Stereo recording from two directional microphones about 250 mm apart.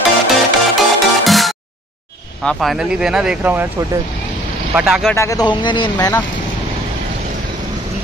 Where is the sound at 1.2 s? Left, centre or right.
Centre.